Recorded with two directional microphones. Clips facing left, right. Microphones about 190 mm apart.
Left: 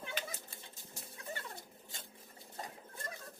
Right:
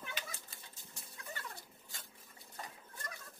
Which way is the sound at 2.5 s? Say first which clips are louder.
Left 3 dB; 25° left (ahead or behind).